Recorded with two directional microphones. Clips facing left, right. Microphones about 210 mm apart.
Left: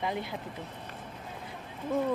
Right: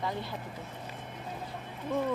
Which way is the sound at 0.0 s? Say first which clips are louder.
Left 2 dB; 15° left (ahead or behind).